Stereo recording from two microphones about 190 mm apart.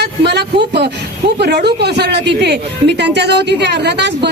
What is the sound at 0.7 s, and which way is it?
Speech, 60° right (ahead or behind).